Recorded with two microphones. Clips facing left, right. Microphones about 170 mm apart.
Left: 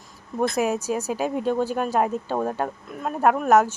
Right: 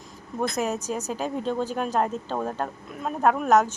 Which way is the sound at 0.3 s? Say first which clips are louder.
Left 4 dB; 10° left (ahead or behind).